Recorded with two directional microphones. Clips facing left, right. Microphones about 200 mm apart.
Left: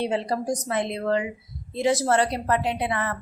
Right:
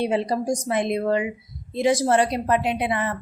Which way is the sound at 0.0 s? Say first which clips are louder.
Right 3 dB; 15° right (ahead or behind).